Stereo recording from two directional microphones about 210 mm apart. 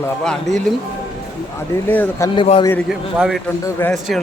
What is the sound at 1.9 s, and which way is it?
Speech, 10° left (ahead or behind).